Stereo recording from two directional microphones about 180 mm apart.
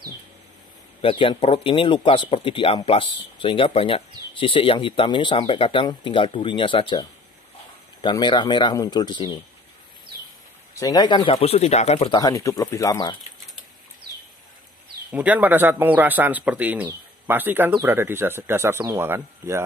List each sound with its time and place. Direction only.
1.0 s speech: 25° left (ahead or behind)
10.7 s speech: 20° left (ahead or behind); by 12.2 s 35° left (ahead or behind)
12.2 s speech: 20° left (ahead or behind)
15.0 s speech: 10° right (ahead or behind)